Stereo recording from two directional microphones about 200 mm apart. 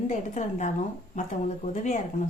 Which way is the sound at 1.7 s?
35° left (ahead or behind).